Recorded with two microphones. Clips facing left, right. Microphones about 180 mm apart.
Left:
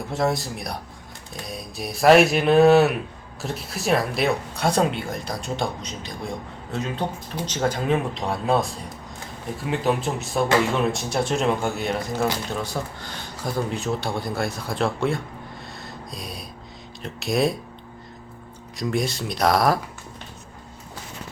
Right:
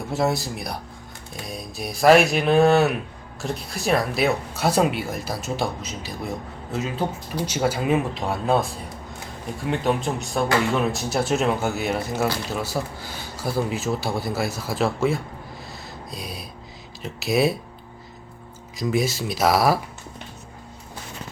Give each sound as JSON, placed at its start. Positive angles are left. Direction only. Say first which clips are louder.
{"t": 0.1, "sound": "speech", "louder": "right 1 dB", "side_deg": 0}
{"t": 15.7, "sound": "a sound", "louder": "right 1 dB", "side_deg": 0}
{"t": 17.0, "sound": "speech", "louder": "right 1 dB", "side_deg": 0}
{"t": 18.8, "sound": "speech", "louder": "right 2 dB", "side_deg": -5}